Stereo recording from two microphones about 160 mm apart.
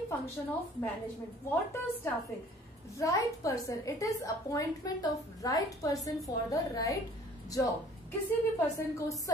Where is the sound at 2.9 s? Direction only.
20° left (ahead or behind).